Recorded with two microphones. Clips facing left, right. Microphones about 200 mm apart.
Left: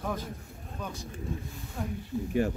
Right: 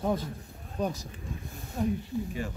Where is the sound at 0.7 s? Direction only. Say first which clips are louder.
Right 8 dB; 35° right (ahead or behind).